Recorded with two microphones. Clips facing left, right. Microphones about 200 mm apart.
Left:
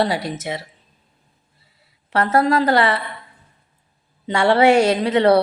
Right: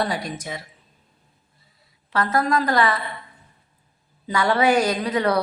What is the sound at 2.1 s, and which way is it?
Speech, 30° left (ahead or behind).